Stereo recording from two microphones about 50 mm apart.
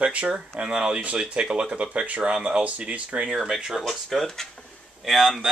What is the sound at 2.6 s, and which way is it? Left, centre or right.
Speech, right.